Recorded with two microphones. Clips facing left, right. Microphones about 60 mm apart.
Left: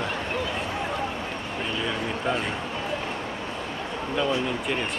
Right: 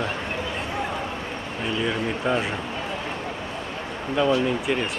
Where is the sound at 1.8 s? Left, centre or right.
Centre.